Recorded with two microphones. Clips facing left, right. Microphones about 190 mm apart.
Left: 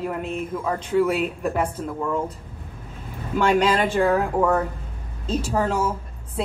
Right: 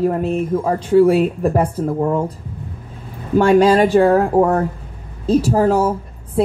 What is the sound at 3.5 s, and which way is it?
A woman's voice, 35° right (ahead or behind).